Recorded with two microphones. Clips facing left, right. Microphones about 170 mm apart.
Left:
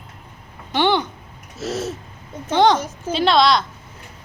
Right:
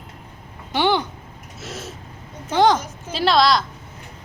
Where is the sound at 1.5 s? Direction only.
40° left (ahead or behind).